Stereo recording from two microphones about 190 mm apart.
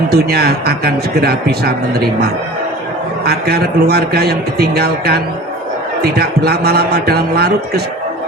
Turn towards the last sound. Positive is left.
turn(degrees=-55)  # may be behind; listen again after turning